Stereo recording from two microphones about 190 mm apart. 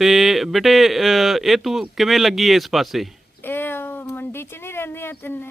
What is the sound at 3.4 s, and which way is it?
Speech, 10° left (ahead or behind).